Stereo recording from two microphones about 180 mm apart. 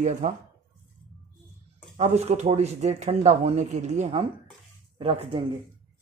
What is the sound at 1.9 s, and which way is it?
Speech, 40° right (ahead or behind).